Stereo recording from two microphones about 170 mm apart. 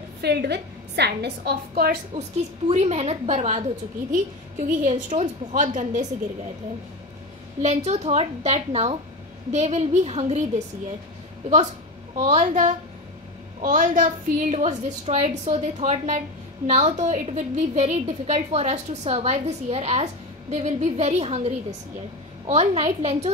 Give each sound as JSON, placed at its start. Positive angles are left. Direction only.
{"t": 0.2, "sound": "a woman's voice", "side_deg": -75}
{"t": 2.7, "sound": "a woman's voice", "side_deg": -40}
{"t": 7.6, "sound": "a woman's voice", "side_deg": -40}
{"t": 11.4, "sound": "a woman's voice", "side_deg": -40}